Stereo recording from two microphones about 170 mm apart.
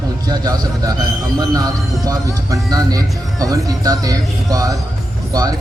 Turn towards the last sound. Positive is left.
turn(degrees=-20)  # may be behind; listen again after turning